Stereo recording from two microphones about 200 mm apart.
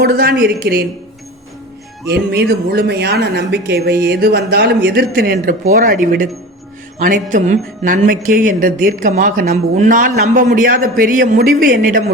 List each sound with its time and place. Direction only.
0.0 s speech: 50° right (ahead or behind)
2.0 s speech: 55° right (ahead or behind)